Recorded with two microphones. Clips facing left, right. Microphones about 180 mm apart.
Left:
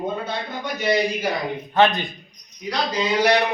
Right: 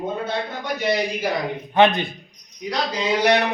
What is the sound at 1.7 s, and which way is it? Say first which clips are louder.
Speech: right 2 dB; 15° right (ahead or behind).